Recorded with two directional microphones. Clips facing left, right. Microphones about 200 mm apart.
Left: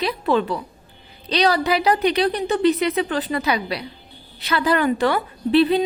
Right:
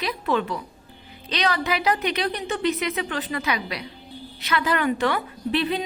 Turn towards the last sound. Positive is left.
turn(degrees=35)  # may be behind; listen again after turning